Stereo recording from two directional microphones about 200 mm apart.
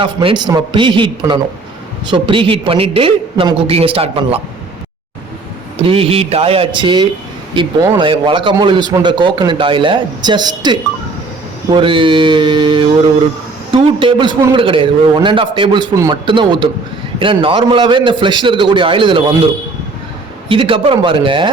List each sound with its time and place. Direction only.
0.0 s a man's voice: 25° right (ahead or behind)
5.8 s a man's voice: 30° right (ahead or behind)
20.5 s a man's voice: 25° right (ahead or behind)